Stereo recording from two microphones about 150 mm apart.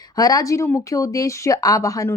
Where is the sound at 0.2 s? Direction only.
25° left (ahead or behind).